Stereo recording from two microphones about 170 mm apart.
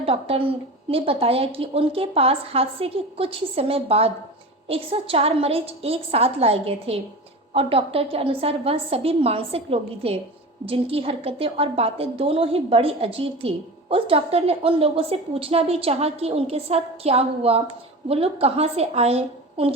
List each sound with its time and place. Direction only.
0.0 s a woman's voice: 35° right (ahead or behind)